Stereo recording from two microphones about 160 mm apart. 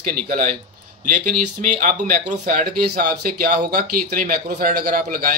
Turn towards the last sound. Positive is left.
turn(degrees=-65)  # may be behind; listen again after turning